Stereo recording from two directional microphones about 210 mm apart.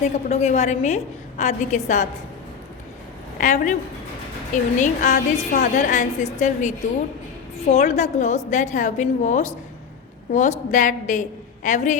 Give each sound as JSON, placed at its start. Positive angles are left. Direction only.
{"t": 0.0, "sound": "a woman's voice", "side_deg": 30}
{"t": 3.4, "sound": "a woman's voice", "side_deg": 35}